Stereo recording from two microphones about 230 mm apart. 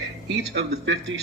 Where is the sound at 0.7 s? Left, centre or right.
Right.